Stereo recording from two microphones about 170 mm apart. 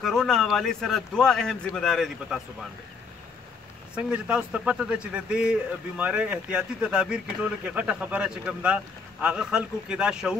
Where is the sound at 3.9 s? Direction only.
5° right (ahead or behind).